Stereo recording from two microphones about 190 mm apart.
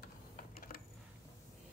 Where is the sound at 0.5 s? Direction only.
50° left (ahead or behind).